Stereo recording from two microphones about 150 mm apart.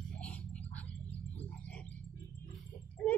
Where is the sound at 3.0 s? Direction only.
10° left (ahead or behind).